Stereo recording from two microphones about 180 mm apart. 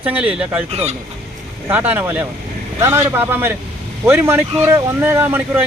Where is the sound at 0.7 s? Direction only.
35° right (ahead or behind).